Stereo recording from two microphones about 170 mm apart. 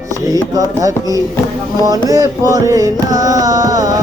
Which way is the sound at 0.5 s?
20° right (ahead or behind).